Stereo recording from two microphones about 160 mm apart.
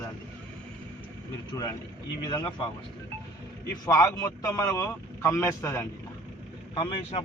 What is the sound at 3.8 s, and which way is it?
Speech, 20° left (ahead or behind).